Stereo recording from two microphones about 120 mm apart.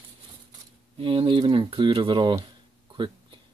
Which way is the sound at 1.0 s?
45° right (ahead or behind).